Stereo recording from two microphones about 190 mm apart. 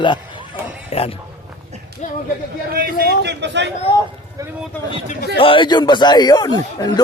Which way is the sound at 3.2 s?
65° right (ahead or behind).